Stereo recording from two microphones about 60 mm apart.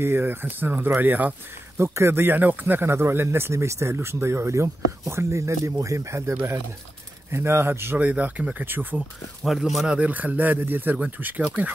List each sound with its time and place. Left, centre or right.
0.0 s speech: right
1.8 s speech: right
8.0 s speech: right
9.4 s speech: centre
9.8 s speech: right